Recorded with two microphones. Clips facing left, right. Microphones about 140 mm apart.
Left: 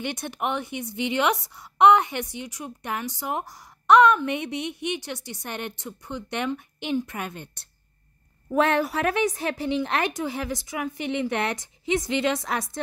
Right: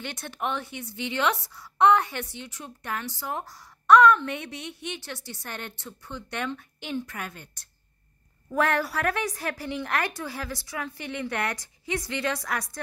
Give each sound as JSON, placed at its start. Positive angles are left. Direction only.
{"t": 0.0, "sound": "a woman's voice", "side_deg": 15}